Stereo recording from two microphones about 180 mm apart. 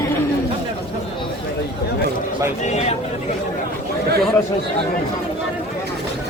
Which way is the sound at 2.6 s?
40° left (ahead or behind).